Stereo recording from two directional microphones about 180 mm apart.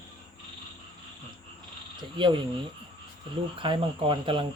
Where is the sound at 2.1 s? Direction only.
25° right (ahead or behind).